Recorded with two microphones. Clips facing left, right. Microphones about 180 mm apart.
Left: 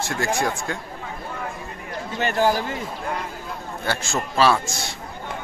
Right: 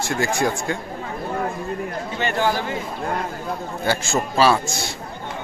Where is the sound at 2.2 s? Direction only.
40° left (ahead or behind).